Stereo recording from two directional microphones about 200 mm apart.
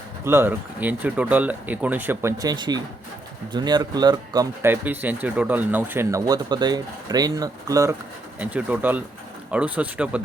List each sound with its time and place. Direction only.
0.3 s speech: 10° right (ahead or behind)